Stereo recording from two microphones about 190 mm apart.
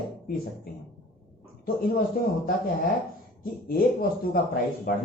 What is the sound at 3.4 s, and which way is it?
Speech, 50° left (ahead or behind).